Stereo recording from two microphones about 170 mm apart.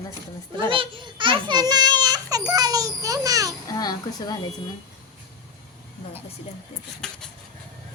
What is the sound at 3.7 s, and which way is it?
Speech, 25° left (ahead or behind).